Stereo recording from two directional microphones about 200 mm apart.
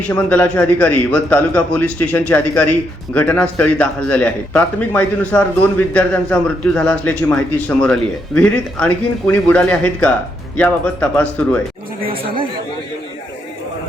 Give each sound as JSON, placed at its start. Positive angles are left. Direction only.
{"t": 0.0, "sound": "speech", "side_deg": 5}
{"t": 12.0, "sound": "speech", "side_deg": -25}